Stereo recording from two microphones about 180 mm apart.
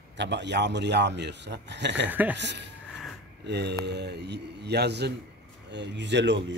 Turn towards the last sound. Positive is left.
turn(degrees=-75)  # may be behind; listen again after turning